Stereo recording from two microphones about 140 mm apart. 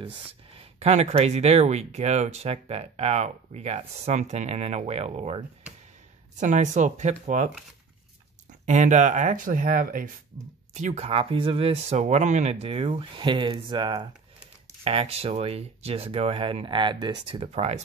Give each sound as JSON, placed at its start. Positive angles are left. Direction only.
{"t": 0.6, "sound": "speech", "side_deg": -50}
{"t": 6.4, "sound": "speech", "side_deg": -60}
{"t": 8.6, "sound": "speech", "side_deg": -60}